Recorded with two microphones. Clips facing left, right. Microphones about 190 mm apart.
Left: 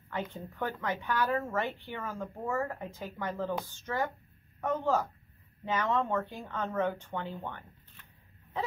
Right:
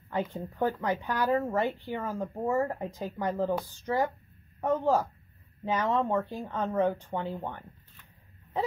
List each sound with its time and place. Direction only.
0.1 s speech: 35° right (ahead or behind)